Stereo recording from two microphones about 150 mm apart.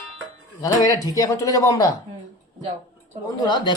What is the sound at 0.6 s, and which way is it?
Speech, 25° left (ahead or behind).